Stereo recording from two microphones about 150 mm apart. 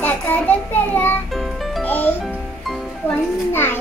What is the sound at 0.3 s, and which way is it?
Child singing, 10° left (ahead or behind).